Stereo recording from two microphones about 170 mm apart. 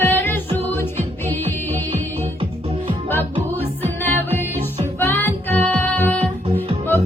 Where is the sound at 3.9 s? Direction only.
10° left (ahead or behind).